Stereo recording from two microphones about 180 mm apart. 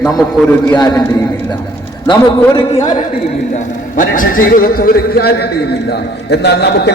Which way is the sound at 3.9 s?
50° left (ahead or behind).